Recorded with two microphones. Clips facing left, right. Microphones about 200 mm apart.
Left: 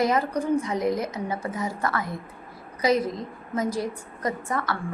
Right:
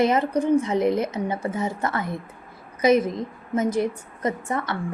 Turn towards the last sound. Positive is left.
turn(degrees=-25)  # may be behind; listen again after turning